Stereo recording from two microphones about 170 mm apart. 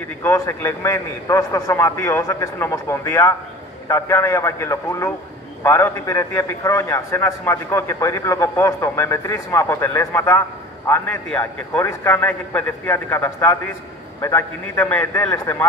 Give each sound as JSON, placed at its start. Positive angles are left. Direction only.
{"t": 0.2, "sound": "a man's voice", "side_deg": 15}